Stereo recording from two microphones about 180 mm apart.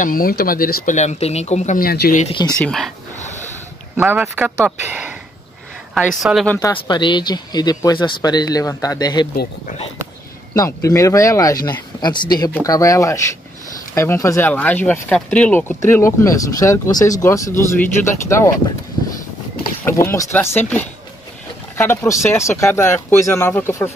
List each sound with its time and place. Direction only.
0.0 s speech: 50° left (ahead or behind)
2.2 s speech: 25° left (ahead or behind)
2.6 s a woman's voice: centre (ahead or behind)
3.9 s speech: 10° right (ahead or behind)
6.0 s a woman's voice: centre (ahead or behind)
6.5 s speech: 20° left (ahead or behind)
10.5 s speech: 20° left (ahead or behind)
19.8 s speech: 15° left (ahead or behind)